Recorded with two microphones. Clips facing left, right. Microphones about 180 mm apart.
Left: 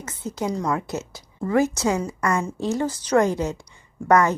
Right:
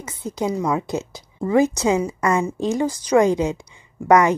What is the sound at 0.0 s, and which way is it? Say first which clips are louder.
A woman's voice: right 3 dB; 15° right (ahead or behind).